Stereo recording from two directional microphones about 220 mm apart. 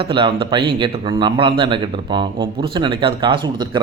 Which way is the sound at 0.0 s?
20° right (ahead or behind).